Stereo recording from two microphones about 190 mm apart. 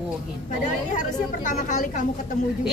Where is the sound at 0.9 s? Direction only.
40° left (ahead or behind).